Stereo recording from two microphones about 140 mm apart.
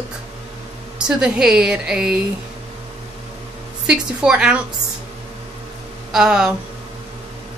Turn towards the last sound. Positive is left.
turn(degrees=-5)  # may be behind; listen again after turning